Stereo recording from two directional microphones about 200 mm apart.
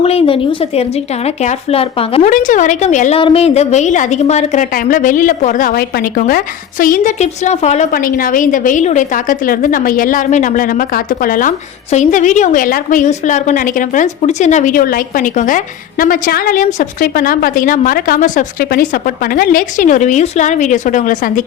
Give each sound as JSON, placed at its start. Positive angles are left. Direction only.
{"t": 0.0, "sound": "speech", "side_deg": 30}
{"t": 2.3, "sound": "a woman's voice", "side_deg": 40}